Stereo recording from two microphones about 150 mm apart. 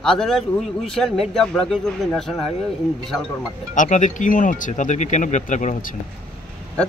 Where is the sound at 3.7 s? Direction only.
55° left (ahead or behind).